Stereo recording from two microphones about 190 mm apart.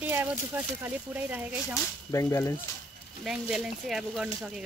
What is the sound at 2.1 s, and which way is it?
Speech, 15° left (ahead or behind).